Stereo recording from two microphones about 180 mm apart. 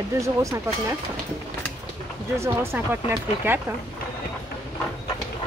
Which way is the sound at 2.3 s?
15° right (ahead or behind).